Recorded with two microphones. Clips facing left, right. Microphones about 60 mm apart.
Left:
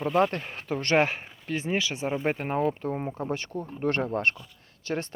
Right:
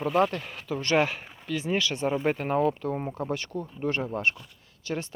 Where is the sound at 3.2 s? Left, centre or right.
Left.